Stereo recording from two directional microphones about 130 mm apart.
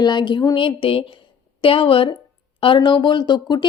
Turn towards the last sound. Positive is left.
turn(degrees=35)  # may be behind; listen again after turning